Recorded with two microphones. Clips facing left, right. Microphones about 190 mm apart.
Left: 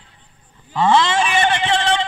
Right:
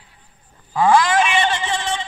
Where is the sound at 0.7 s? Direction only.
25° left (ahead or behind).